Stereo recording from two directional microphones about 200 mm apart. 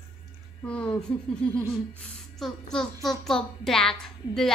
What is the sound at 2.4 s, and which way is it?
A woman's voice, 5° left (ahead or behind).